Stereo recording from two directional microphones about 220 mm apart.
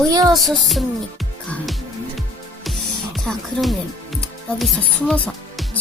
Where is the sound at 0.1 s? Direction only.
15° right (ahead or behind).